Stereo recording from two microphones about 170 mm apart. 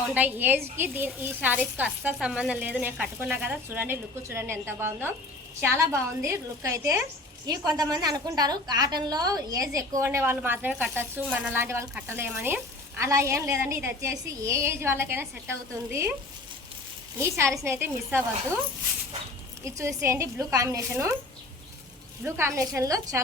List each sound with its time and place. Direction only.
0.1 s a woman's voice: 10° right (ahead or behind)
17.2 s a woman's voice: 15° right (ahead or behind)
19.6 s a woman's voice: 15° right (ahead or behind)
22.2 s a woman's voice: 15° right (ahead or behind)